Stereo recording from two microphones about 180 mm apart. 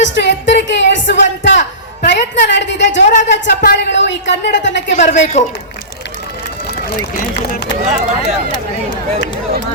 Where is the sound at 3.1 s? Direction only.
45° left (ahead or behind).